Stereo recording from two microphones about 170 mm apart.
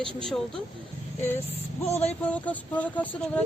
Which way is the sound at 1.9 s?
40° left (ahead or behind).